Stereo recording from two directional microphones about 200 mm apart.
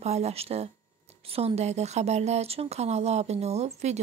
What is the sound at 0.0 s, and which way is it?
A woman's voice, 35° right (ahead or behind).